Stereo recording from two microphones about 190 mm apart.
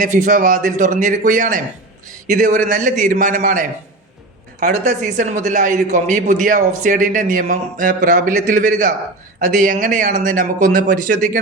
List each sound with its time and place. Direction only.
0.0 s speech: 45° right (ahead or behind)